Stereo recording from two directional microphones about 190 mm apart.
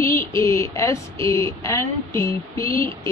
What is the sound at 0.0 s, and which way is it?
A woman's voice, 15° left (ahead or behind).